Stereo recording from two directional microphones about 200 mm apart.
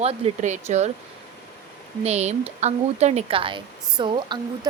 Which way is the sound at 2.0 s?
35° right (ahead or behind).